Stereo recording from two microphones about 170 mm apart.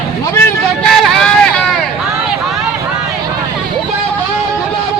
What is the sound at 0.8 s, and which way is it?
Vehicle, 5° left (ahead or behind).